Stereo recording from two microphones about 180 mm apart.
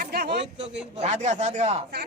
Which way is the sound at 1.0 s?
40° right (ahead or behind).